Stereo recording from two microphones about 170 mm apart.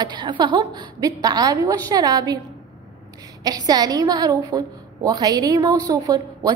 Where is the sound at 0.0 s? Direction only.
25° right (ahead or behind).